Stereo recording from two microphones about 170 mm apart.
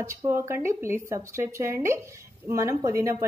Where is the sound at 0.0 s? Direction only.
15° right (ahead or behind).